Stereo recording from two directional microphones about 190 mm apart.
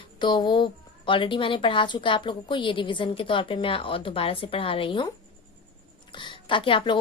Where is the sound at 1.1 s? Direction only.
25° left (ahead or behind).